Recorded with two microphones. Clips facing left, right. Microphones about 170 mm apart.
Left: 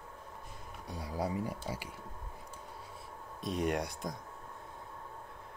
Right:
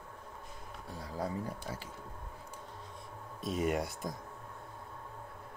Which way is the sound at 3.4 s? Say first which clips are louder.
Right 1 dB; centre (ahead or behind).